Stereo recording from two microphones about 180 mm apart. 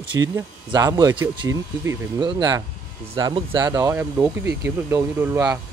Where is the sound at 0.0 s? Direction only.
25° right (ahead or behind).